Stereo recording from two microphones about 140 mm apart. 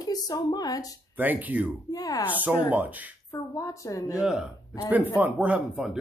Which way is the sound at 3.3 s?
25° left (ahead or behind).